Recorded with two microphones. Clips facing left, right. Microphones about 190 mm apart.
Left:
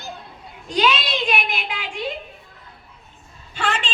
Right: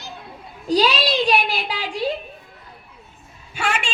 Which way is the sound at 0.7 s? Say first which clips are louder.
Right 3 dB; 35° right (ahead or behind).